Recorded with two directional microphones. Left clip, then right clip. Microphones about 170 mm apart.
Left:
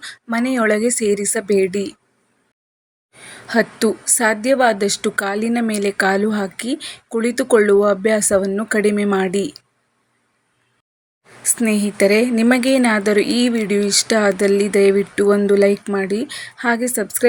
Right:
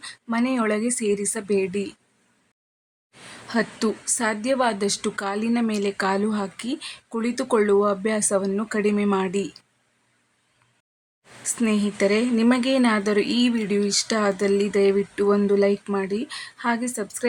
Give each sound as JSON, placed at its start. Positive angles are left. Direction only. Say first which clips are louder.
{"t": 0.0, "sound": "a woman's voice", "louder": "left 4 dB", "side_deg": 20}
{"t": 3.1, "sound": "a woman's voice", "louder": "left 7 dB", "side_deg": 20}
{"t": 11.4, "sound": "a woman's voice", "louder": "left 5 dB", "side_deg": 20}